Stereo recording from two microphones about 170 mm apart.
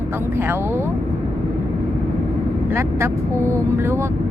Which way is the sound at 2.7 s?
15° right (ahead or behind).